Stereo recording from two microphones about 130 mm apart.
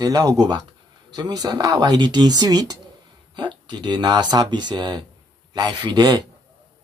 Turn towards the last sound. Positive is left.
turn(degrees=-30)  # may be behind; listen again after turning